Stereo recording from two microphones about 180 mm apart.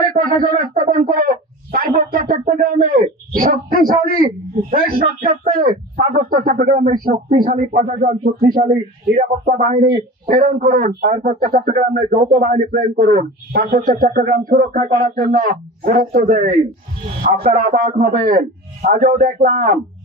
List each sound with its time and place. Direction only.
0.2 s a man's voice: 55° right (ahead or behind)